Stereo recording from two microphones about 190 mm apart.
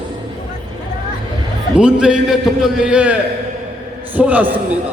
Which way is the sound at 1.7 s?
5° right (ahead or behind).